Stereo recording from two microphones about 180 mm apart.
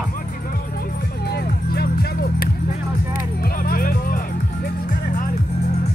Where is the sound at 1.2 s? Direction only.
60° left (ahead or behind).